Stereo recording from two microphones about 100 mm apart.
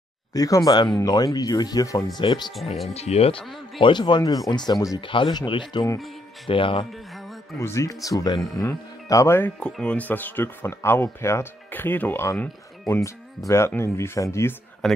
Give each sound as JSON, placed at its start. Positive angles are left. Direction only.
{"t": 0.3, "sound": "speech", "side_deg": 35}
{"t": 2.1, "sound": "speech", "side_deg": 45}
{"t": 2.9, "sound": "speech", "side_deg": 90}
{"t": 3.8, "sound": "speech", "side_deg": 50}
{"t": 5.0, "sound": "speech", "side_deg": 60}
{"t": 7.5, "sound": "speech", "side_deg": 30}
{"t": 9.6, "sound": "speech", "side_deg": 10}
{"t": 14.8, "sound": "speech", "side_deg": 5}